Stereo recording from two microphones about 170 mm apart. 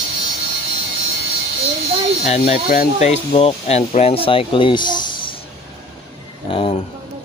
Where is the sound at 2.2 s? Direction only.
40° left (ahead or behind).